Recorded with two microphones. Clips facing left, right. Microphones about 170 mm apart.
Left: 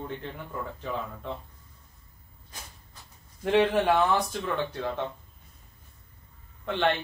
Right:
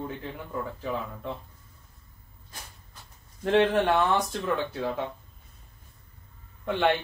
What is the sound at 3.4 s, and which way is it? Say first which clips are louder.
Speech: right 1 dB; 5° left (ahead or behind).